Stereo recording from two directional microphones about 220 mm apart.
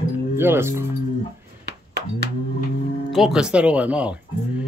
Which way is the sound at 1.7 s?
50° right (ahead or behind).